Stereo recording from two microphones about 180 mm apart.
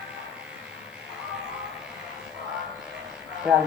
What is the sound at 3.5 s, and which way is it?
Speech, 5° right (ahead or behind).